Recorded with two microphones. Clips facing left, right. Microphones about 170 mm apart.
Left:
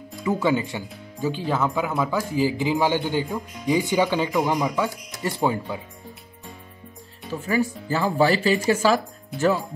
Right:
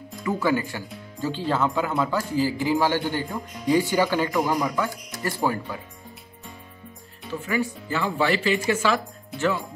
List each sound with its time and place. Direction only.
0.2 s a man's voice: 20° left (ahead or behind)
7.4 s speech: 40° left (ahead or behind)